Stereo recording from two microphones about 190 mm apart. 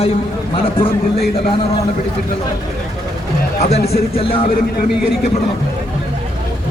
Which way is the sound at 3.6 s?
35° left (ahead or behind).